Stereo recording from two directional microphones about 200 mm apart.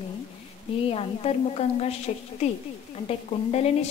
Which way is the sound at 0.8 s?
30° left (ahead or behind).